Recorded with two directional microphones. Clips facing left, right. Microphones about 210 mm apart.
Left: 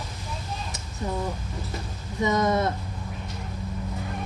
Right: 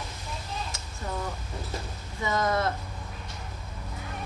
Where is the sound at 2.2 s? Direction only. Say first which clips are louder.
Left 4 dB; 20° left (ahead or behind).